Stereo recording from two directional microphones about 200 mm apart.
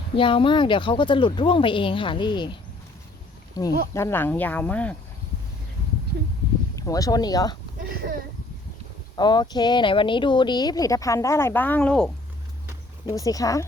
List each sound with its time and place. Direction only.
0.2 s speech: 25° left (ahead or behind); by 4.9 s 5° left (ahead or behind)
6.7 s speech: 15° left (ahead or behind)
7.8 s a sound: 45° right (ahead or behind)
9.1 s speech: 20° left (ahead or behind); by 12.1 s 5° left (ahead or behind)
13.1 s speech: 15° left (ahead or behind)